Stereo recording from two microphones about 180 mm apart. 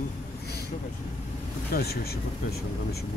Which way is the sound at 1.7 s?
60° left (ahead or behind).